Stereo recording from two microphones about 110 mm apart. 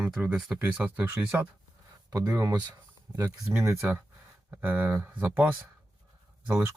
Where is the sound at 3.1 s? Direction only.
15° right (ahead or behind).